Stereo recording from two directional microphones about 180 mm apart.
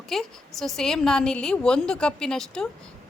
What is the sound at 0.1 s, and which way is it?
A woman's voice, centre (ahead or behind).